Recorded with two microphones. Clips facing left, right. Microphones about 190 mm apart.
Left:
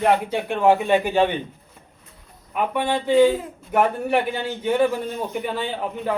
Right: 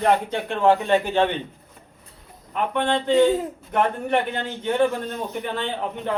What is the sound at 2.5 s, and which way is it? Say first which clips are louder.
A man's voice: even; 10° left (ahead or behind).